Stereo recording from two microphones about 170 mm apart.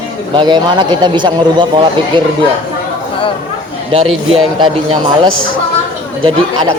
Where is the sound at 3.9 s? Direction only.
35° right (ahead or behind).